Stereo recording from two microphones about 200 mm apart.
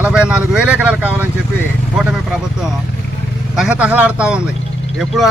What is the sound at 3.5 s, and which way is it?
Speech, 5° right (ahead or behind).